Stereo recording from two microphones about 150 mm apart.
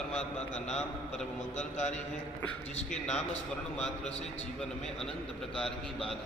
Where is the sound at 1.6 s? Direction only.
50° left (ahead or behind).